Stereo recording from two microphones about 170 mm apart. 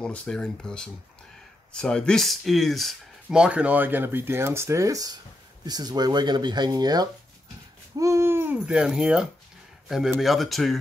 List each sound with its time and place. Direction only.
0.0 s speech: 5° left (ahead or behind)